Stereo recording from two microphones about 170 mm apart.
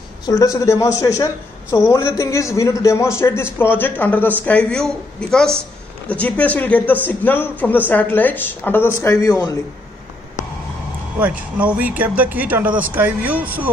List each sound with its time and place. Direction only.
0.3 s a man's voice: 20° left (ahead or behind)
11.1 s speech: 10° right (ahead or behind)